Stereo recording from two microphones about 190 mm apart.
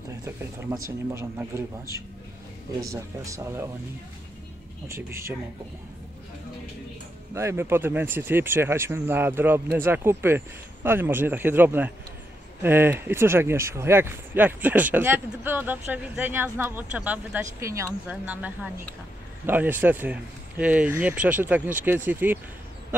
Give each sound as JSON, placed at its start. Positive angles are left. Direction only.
{"t": 0.2, "sound": "speech", "side_deg": -15}
{"t": 4.8, "sound": "speech", "side_deg": -15}
{"t": 7.3, "sound": "speech", "side_deg": -15}